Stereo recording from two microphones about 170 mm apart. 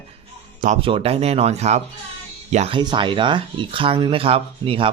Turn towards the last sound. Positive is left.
turn(degrees=-30)  # may be behind; listen again after turning